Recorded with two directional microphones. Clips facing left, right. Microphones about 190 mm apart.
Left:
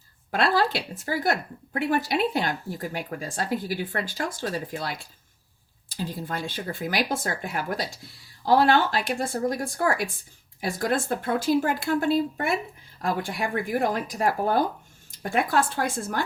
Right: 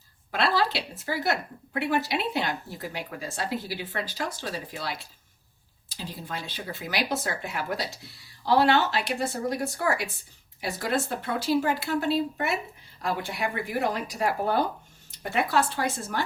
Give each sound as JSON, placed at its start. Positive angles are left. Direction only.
{"t": 0.3, "sound": "a woman's voice", "side_deg": 50}